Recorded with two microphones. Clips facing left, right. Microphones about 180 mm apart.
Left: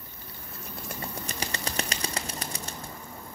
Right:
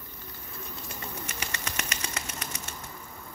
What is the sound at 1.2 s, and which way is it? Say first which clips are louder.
Bird flight: left 3 dB; 35° left (ahead or behind).